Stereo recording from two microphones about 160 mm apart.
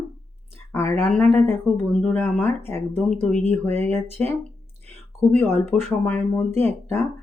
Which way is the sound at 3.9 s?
15° left (ahead or behind).